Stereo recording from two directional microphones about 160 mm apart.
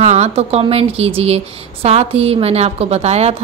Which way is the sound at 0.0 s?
45° right (ahead or behind).